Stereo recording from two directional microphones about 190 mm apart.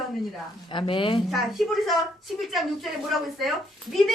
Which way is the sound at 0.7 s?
25° left (ahead or behind).